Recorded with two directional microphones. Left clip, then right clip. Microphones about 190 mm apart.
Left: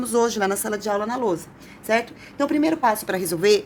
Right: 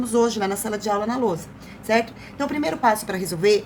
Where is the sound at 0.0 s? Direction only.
45° left (ahead or behind).